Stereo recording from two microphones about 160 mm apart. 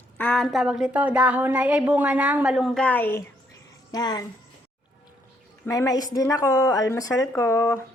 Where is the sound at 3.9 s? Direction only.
25° left (ahead or behind).